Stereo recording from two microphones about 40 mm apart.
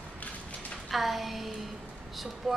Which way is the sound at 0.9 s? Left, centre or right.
Centre.